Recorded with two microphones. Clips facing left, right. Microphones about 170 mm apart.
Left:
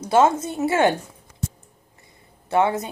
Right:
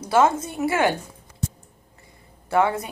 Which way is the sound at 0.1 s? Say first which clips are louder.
Left 2 dB; 25° left (ahead or behind).